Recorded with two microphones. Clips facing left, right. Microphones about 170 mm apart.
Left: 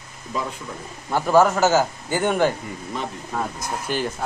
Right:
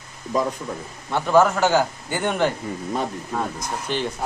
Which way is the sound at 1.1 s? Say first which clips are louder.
Even; 5° left (ahead or behind).